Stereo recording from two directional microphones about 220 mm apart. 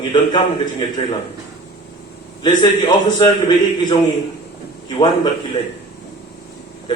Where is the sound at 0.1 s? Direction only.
20° left (ahead or behind).